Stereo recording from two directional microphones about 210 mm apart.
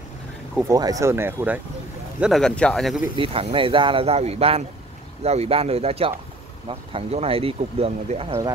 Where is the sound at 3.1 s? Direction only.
25° right (ahead or behind).